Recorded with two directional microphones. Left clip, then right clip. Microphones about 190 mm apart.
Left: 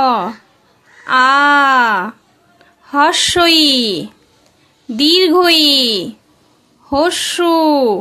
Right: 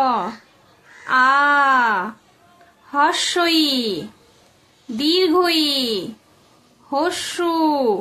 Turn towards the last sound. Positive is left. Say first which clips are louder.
# left 6 dB
turn(degrees=45)  # may be behind; listen again after turning